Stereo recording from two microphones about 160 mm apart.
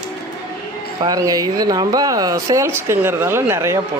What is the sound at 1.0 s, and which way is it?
Speech, 25° right (ahead or behind).